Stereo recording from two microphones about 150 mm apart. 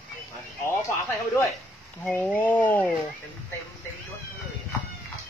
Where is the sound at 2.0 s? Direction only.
10° left (ahead or behind).